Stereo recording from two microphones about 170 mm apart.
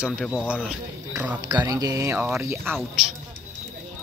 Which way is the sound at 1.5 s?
20° right (ahead or behind).